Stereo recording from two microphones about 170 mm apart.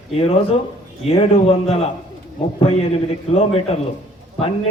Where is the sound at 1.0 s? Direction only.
35° left (ahead or behind).